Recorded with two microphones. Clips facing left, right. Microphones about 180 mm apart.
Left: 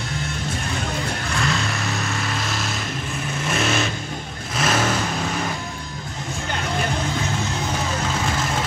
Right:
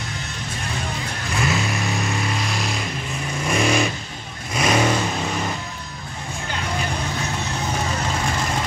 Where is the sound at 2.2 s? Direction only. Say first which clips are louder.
Right 1 dB; centre (ahead or behind).